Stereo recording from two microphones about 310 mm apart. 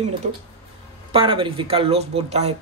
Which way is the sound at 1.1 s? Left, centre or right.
Centre.